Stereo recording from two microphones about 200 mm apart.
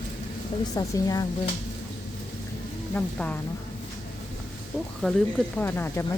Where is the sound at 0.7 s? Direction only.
20° left (ahead or behind).